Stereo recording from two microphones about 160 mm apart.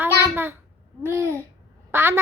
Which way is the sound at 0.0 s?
15° right (ahead or behind).